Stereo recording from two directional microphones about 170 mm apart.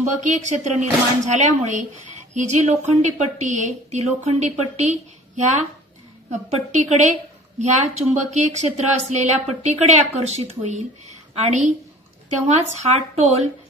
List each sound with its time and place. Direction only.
0.2 s a woman's voice: 45° right (ahead or behind)
12.7 s a woman's voice: 40° right (ahead or behind)